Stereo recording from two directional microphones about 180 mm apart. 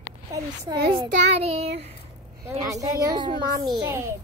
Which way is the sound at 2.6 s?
20° right (ahead or behind).